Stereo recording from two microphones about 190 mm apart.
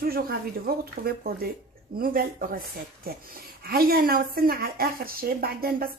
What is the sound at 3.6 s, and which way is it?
A woman's voice, 50° right (ahead or behind).